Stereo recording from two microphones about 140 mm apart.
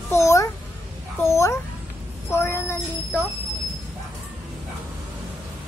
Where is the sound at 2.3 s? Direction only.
20° left (ahead or behind).